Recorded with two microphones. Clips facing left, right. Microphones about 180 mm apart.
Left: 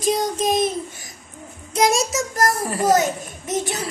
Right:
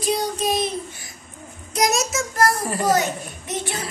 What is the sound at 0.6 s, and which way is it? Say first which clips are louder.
Babbling: left 3 dB; 45° left (ahead or behind).